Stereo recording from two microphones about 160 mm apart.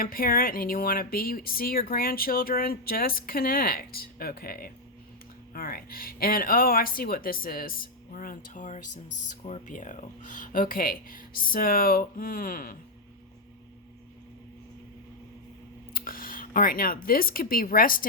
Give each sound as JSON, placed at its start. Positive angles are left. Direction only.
{"t": 0.0, "sound": "speech", "side_deg": 65}
{"t": 15.9, "sound": "speech", "side_deg": 65}